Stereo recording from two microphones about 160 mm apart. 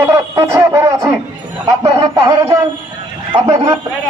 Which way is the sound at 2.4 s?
20° right (ahead or behind).